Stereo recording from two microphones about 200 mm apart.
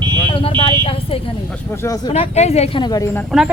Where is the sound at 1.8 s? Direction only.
15° left (ahead or behind).